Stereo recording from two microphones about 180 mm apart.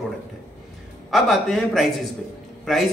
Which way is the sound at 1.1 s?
Centre (ahead or behind).